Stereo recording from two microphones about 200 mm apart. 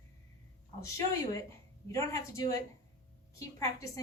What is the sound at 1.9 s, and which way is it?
A woman's voice, 15° left (ahead or behind).